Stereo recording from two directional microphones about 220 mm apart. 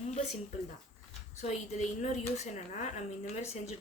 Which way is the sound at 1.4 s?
30° left (ahead or behind).